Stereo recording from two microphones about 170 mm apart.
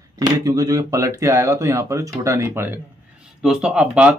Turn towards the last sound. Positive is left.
turn(degrees=-5)  # may be behind; listen again after turning